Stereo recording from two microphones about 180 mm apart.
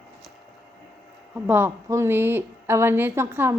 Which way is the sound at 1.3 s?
10° right (ahead or behind).